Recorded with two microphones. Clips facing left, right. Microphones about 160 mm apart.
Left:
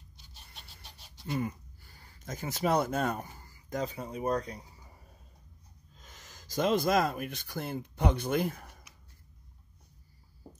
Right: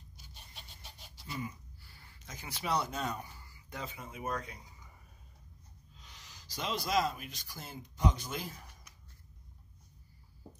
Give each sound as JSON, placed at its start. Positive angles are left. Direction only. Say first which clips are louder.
{"t": 0.6, "sound": "chicken", "louder": "even", "side_deg": 0}
{"t": 1.2, "sound": "speech", "louder": "left 8 dB", "side_deg": 55}
{"t": 5.9, "sound": "speech", "louder": "left 3 dB", "side_deg": 45}